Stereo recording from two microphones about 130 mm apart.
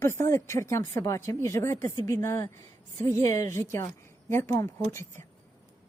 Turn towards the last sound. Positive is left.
turn(degrees=20)  # may be behind; listen again after turning